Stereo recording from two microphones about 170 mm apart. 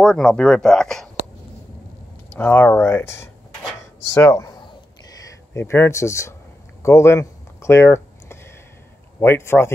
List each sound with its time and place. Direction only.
0.0 s speech: 5° left (ahead or behind)
2.3 s speech: 10° left (ahead or behind)
6.8 s a sound: 15° left (ahead or behind)
9.2 s speech: 15° left (ahead or behind)